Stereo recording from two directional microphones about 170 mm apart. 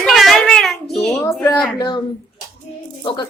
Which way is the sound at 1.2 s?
15° left (ahead or behind).